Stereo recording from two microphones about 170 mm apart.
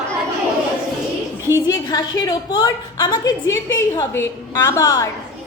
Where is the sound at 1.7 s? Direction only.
20° left (ahead or behind).